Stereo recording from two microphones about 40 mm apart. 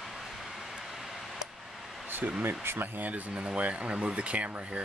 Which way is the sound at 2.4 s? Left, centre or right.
Right.